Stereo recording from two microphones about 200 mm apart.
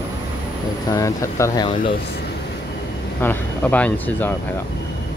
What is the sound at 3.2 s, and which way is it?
Speech, 10° left (ahead or behind).